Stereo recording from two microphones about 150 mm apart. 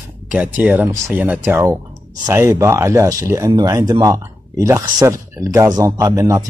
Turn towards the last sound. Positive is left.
turn(degrees=-25)  # may be behind; listen again after turning